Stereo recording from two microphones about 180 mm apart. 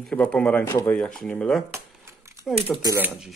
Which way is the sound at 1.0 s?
5° left (ahead or behind).